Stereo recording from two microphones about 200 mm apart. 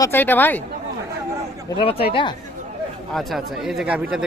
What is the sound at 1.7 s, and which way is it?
Speech, 25° left (ahead or behind).